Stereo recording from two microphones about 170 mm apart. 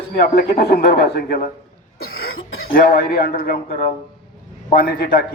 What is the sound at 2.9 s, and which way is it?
A man's voice, 65° left (ahead or behind).